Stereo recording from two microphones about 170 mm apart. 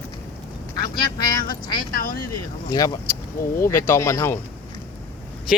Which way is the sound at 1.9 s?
55° left (ahead or behind).